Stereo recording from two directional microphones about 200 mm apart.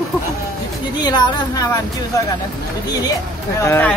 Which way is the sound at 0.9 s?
20° left (ahead or behind).